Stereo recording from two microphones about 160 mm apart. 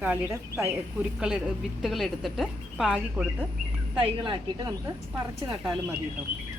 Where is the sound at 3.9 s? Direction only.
30° right (ahead or behind).